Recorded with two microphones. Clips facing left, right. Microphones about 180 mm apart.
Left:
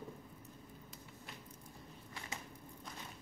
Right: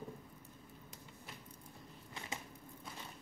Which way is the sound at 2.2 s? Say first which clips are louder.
Right 2 dB; 20° right (ahead or behind).